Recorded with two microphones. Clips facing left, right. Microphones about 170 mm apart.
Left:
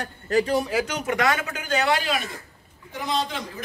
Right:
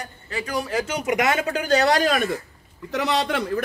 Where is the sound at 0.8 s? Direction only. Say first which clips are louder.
Right 2 dB; 10° right (ahead or behind).